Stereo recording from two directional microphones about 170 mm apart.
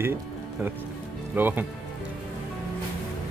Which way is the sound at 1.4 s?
10° right (ahead or behind).